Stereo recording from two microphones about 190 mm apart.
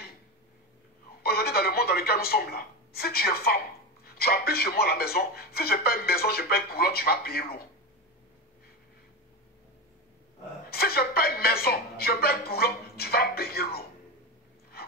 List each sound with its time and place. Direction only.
1.2 s a woman's voice: 55° left (ahead or behind)
10.7 s a woman's voice: 55° left (ahead or behind)
14.7 s a sound: 55° left (ahead or behind)